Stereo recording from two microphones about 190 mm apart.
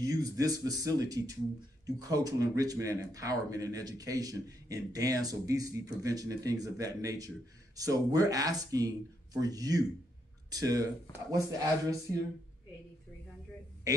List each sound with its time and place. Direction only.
0.0 s speech: 20° right (ahead or behind)